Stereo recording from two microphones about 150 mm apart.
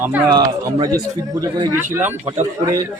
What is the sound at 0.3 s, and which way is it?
Speech, 25° right (ahead or behind).